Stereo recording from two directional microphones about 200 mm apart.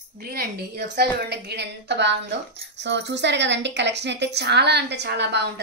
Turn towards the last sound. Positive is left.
turn(degrees=-60)  # may be behind; listen again after turning